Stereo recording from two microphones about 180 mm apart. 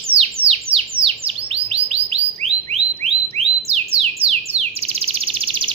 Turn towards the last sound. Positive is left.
turn(degrees=-35)  # may be behind; listen again after turning